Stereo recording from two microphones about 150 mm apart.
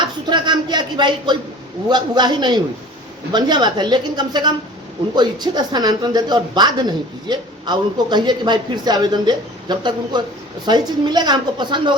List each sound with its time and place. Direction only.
0.0 s speech: 30° right (ahead or behind)